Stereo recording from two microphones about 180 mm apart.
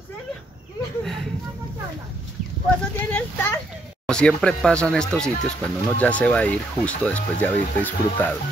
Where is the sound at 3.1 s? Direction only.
10° left (ahead or behind).